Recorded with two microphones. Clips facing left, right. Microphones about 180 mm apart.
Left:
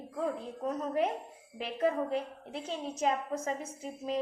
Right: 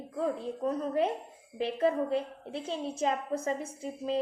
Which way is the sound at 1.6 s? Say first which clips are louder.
Right 3 dB; 30° right (ahead or behind).